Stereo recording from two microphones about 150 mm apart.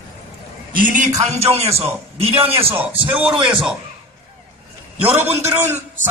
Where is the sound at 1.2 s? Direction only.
45° right (ahead or behind).